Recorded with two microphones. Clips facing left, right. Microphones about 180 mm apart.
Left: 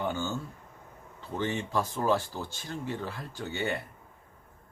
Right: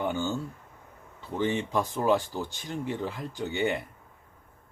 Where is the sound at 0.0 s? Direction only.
15° right (ahead or behind).